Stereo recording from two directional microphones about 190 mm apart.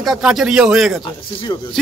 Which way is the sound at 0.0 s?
Centre (ahead or behind).